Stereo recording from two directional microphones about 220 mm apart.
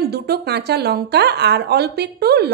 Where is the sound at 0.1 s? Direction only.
45° right (ahead or behind).